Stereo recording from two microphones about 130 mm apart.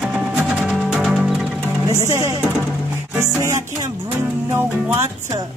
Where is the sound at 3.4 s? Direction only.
25° right (ahead or behind).